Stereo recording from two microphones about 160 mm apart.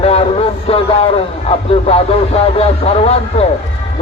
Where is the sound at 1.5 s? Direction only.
40° left (ahead or behind).